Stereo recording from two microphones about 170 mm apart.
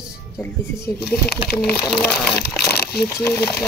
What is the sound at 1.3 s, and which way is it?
Speech, 65° left (ahead or behind).